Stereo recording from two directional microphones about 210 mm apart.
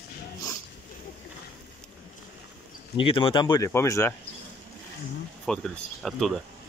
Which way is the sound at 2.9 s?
25° left (ahead or behind).